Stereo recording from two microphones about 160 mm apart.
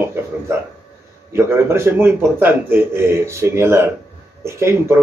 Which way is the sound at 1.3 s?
15° right (ahead or behind).